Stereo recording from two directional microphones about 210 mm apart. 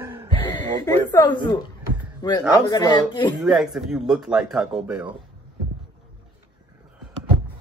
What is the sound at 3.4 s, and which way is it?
Speech, centre (ahead or behind).